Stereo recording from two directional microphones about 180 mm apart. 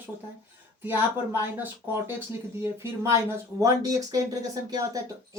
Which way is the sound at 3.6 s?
20° right (ahead or behind).